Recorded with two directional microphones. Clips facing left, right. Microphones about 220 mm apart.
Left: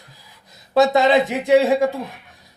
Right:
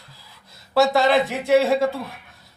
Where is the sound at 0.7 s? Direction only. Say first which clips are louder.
Left 3 dB; 20° left (ahead or behind).